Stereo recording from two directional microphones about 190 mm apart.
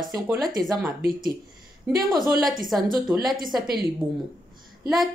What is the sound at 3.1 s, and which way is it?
Speech, centre (ahead or behind).